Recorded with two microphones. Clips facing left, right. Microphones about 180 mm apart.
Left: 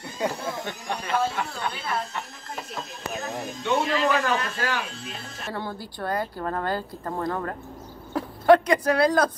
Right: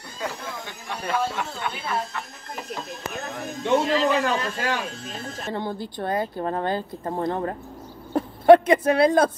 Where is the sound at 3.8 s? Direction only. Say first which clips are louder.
Right 2 dB; 35° right (ahead or behind).